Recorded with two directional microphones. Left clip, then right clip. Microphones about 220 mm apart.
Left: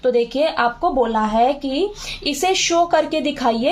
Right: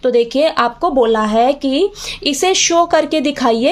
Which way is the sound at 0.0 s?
40° right (ahead or behind).